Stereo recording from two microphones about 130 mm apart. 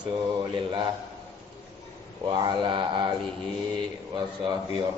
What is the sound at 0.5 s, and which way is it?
Speech, 35° right (ahead or behind).